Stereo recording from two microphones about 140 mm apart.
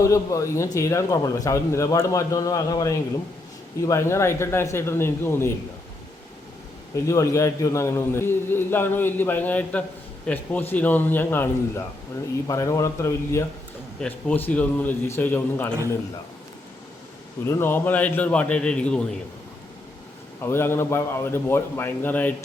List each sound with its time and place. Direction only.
0.0 s a man's voice: 25° left (ahead or behind)
6.9 s a man's voice: 20° left (ahead or behind)
17.4 s a man's voice: 15° left (ahead or behind)
20.4 s a man's voice: 15° left (ahead or behind)